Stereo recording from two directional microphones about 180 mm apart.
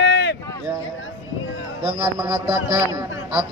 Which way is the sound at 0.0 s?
80° left.